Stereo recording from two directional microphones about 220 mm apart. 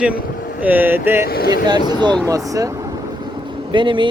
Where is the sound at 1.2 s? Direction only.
45° left (ahead or behind).